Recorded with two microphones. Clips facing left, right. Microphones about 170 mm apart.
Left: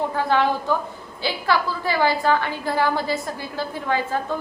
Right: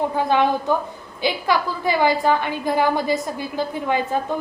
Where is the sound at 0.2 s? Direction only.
15° right (ahead or behind).